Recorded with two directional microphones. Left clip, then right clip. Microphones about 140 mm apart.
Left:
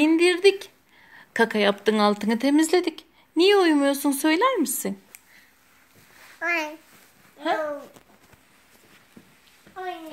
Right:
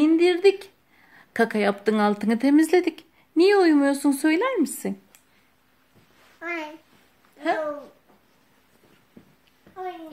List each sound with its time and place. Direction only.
0.0 s a sound: 30° right (ahead or behind)
1.1 s speech: 35° right (ahead or behind)
6.4 s a child's voice: 15° left (ahead or behind)